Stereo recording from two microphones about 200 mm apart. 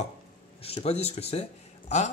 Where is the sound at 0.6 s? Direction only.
30° left (ahead or behind).